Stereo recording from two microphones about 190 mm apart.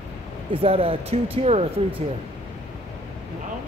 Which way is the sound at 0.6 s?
30° right (ahead or behind).